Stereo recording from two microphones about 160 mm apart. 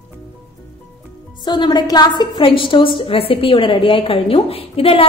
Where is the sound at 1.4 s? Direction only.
30° left (ahead or behind).